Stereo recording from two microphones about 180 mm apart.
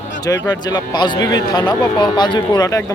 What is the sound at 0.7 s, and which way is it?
Speech, 25° left (ahead or behind).